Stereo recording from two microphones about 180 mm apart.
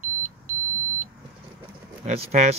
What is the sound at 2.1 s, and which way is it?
Speech, 35° right (ahead or behind).